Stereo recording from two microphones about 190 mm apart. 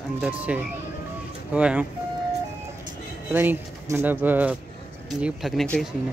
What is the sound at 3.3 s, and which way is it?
Speech, 10° right (ahead or behind).